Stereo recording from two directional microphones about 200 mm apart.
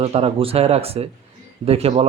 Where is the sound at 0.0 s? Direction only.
30° right (ahead or behind).